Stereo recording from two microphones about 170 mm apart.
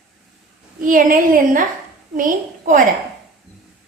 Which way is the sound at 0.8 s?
55° right (ahead or behind).